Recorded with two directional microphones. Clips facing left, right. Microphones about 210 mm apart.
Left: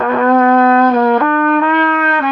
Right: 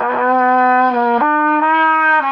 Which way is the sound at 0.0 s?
5° right (ahead or behind).